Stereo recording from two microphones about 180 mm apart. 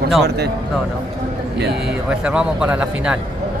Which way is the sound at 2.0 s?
5° right (ahead or behind).